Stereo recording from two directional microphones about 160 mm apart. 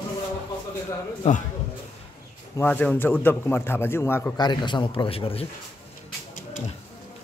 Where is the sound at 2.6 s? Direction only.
10° left (ahead or behind).